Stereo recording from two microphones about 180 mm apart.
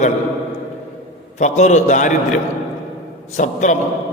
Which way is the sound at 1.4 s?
40° left (ahead or behind).